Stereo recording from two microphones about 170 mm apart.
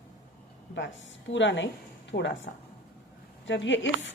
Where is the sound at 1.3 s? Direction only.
90° left.